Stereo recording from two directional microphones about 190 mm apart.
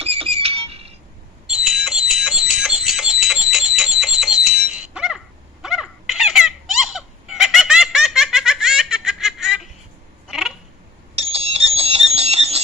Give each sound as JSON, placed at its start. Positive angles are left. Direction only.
{"t": 0.0, "sound": "cash register", "side_deg": -30}
{"t": 1.5, "sound": "a sound", "side_deg": 0}
{"t": 11.1, "sound": "clock", "side_deg": -30}